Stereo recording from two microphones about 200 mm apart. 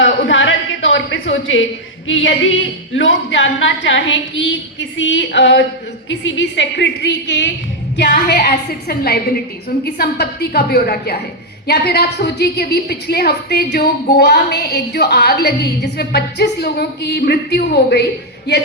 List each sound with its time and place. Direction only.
0.0 s a sound: 70° left (ahead or behind)
2.0 s a woman's voice: 75° left (ahead or behind)
8.1 s a woman's voice: 45° left (ahead or behind)